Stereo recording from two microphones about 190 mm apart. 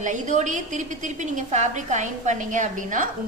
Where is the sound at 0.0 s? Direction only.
40° right (ahead or behind).